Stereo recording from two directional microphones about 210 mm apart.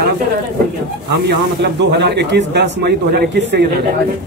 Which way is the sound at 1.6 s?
55° right (ahead or behind).